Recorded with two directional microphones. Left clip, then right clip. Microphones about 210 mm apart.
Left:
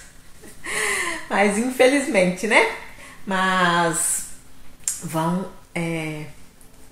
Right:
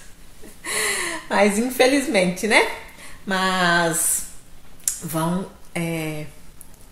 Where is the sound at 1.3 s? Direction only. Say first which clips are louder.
Right 2 dB; 15° right (ahead or behind).